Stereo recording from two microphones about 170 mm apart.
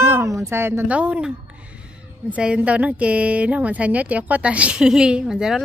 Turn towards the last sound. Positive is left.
turn(degrees=-5)  # may be behind; listen again after turning